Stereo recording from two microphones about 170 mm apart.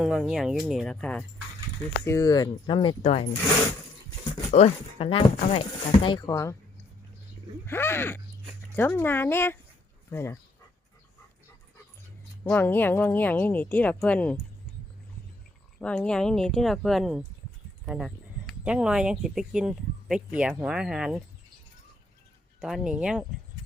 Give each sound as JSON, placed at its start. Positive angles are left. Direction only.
{"t": 0.0, "sound": "speech", "side_deg": -5}
{"t": 2.0, "sound": "speech", "side_deg": 20}
{"t": 4.5, "sound": "speech", "side_deg": 35}
{"t": 7.7, "sound": "speech", "side_deg": 15}
{"t": 12.5, "sound": "speech", "side_deg": 10}
{"t": 15.8, "sound": "speech", "side_deg": 5}
{"t": 22.6, "sound": "speech", "side_deg": -5}